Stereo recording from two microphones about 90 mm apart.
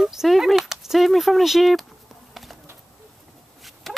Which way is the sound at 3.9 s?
Centre (ahead or behind).